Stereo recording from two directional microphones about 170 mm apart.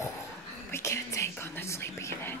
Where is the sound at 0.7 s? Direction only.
15° left (ahead or behind).